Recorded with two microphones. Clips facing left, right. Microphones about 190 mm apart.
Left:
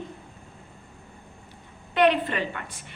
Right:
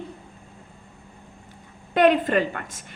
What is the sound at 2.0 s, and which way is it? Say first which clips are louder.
Speech: right 4 dB; 45° right (ahead or behind).